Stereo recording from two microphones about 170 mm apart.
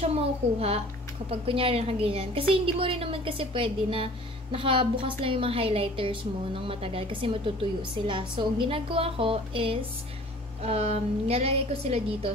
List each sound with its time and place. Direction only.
0.1 s a woman's voice: 35° right (ahead or behind)